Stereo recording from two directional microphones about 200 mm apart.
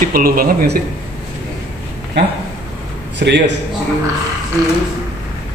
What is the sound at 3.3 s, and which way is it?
Speech, 60° right (ahead or behind).